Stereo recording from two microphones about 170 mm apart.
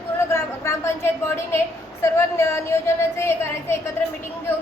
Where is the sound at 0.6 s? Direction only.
15° left (ahead or behind).